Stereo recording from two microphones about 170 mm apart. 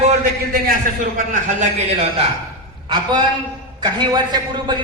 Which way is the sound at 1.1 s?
50° right (ahead or behind).